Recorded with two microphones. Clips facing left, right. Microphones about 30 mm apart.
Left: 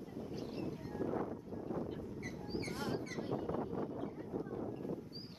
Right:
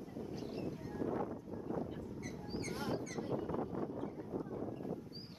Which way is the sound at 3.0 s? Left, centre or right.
Left.